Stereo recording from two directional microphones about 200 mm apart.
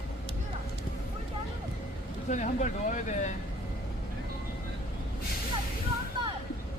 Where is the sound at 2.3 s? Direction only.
40° left (ahead or behind).